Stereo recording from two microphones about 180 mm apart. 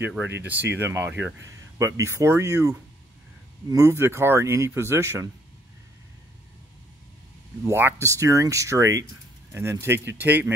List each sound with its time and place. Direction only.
0.0 s speech: 10° right (ahead or behind)
3.7 s speech: 15° right (ahead or behind)
7.6 s speech: 15° right (ahead or behind)